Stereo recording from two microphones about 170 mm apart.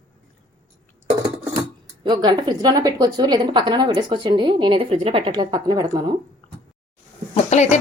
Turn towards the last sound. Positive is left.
turn(degrees=40)  # may be behind; listen again after turning